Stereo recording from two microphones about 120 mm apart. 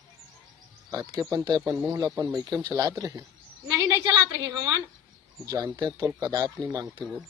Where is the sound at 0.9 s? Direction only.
30° right (ahead or behind).